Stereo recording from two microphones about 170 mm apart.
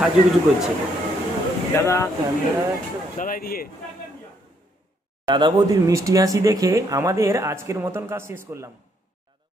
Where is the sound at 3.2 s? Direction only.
55° left (ahead or behind).